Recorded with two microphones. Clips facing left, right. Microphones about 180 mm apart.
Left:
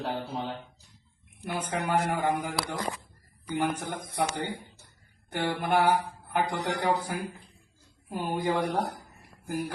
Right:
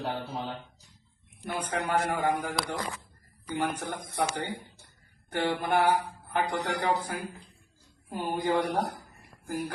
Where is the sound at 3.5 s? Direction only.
15° left (ahead or behind).